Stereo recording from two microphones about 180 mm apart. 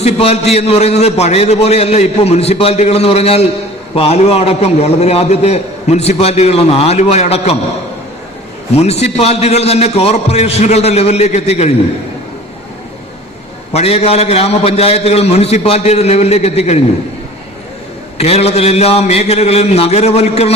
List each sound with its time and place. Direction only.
0.0 s a man's voice: 35° left (ahead or behind)
8.7 s a man's voice: 35° left (ahead or behind)
13.7 s a man's voice: 35° left (ahead or behind)
18.2 s a man's voice: 35° left (ahead or behind)